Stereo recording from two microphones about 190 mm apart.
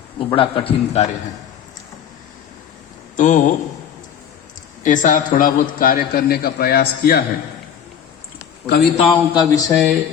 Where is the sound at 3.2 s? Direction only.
40° left (ahead or behind).